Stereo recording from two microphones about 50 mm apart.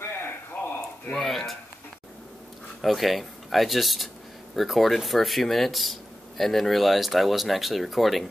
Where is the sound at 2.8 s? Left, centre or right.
Centre.